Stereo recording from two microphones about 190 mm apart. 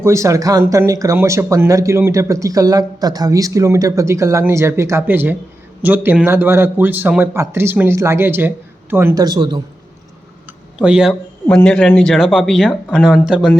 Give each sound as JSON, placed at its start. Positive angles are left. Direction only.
{"t": 0.0, "sound": "speech", "side_deg": -15}
{"t": 10.8, "sound": "speech", "side_deg": -5}